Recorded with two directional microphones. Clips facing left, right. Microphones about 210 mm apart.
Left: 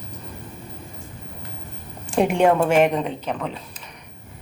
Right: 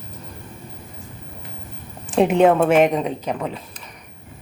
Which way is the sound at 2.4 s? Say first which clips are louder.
Right 2 dB; 5° right (ahead or behind).